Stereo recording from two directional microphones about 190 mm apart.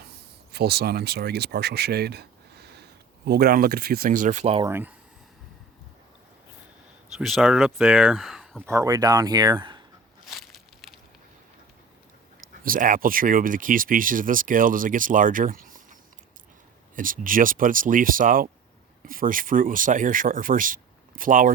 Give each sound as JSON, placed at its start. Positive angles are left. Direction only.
{"t": 0.5, "sound": "speech", "side_deg": -55}
{"t": 4.6, "sound": "speech", "side_deg": -10}
{"t": 7.2, "sound": "speech", "side_deg": 0}
{"t": 8.6, "sound": "speech", "side_deg": -15}
{"t": 10.2, "sound": "a sound", "side_deg": 0}
{"t": 12.6, "sound": "speech", "side_deg": -45}